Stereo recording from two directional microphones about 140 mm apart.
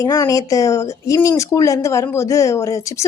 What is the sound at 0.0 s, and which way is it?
A woman's voice, 25° left (ahead or behind).